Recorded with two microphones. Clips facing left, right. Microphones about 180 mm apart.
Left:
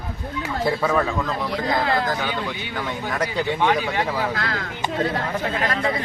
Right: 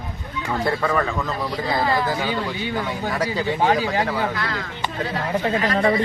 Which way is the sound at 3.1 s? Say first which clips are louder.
Even; 5° right (ahead or behind).